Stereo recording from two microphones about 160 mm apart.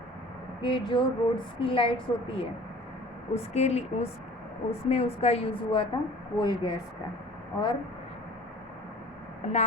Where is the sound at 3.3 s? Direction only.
45° left (ahead or behind).